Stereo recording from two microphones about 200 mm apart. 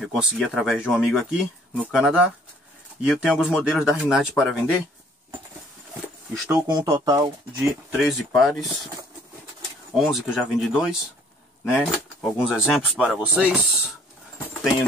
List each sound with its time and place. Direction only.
0.0 s speech: 5° right (ahead or behind)
6.5 s speech: 20° right (ahead or behind)
7.9 s speech: centre (ahead or behind)
9.9 s speech: centre (ahead or behind)